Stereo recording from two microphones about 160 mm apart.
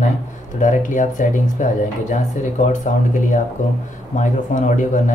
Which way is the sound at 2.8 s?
55° left (ahead or behind).